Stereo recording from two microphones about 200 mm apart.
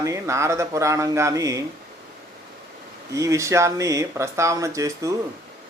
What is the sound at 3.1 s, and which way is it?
A man's voice, 15° right (ahead or behind).